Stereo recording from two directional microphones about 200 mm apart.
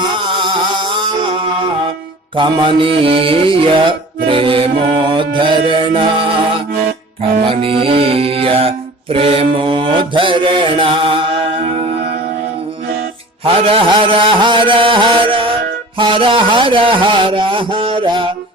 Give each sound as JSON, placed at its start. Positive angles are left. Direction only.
{"t": 0.0, "sound": "music", "side_deg": -25}
{"t": 13.4, "sound": "music", "side_deg": -30}